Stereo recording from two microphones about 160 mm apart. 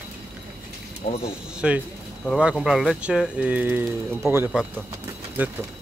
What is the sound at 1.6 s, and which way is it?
Speech, 5° right (ahead or behind).